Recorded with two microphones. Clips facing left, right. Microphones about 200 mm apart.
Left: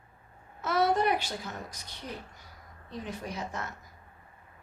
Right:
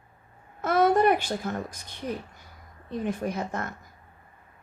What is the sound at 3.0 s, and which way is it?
Speech, 50° right (ahead or behind).